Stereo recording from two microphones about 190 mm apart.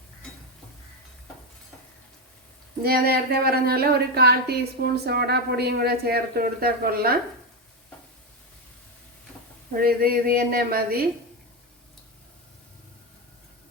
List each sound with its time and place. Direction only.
2.8 s speech: 55° right (ahead or behind)
9.7 s speech: 50° right (ahead or behind)